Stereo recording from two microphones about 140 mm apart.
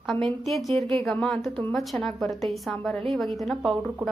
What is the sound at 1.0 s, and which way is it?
A woman's voice, 5° left (ahead or behind).